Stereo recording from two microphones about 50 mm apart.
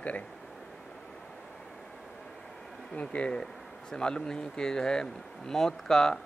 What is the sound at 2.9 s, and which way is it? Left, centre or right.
A man's voice, left.